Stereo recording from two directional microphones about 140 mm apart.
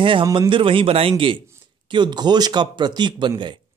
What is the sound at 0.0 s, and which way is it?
A man's voice, 35° right (ahead or behind).